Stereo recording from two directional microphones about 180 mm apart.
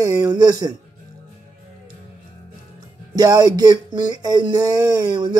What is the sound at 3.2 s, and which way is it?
Speech, 20° right (ahead or behind).